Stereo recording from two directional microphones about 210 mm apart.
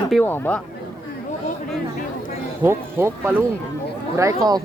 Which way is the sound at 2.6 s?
10° right (ahead or behind).